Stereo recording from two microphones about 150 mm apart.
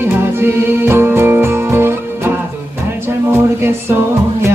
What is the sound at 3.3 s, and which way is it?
Music, 15° right (ahead or behind).